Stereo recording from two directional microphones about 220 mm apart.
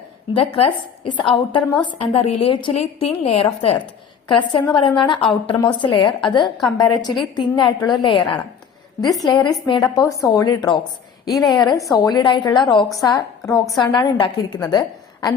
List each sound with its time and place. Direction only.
0.3 s a woman's voice: 25° left (ahead or behind)
6.4 s a woman's voice: centre (ahead or behind)
7.0 s a woman's voice: 20° left (ahead or behind)